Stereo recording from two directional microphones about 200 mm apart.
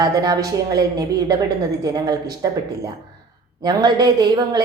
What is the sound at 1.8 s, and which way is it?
Speech, 20° right (ahead or behind).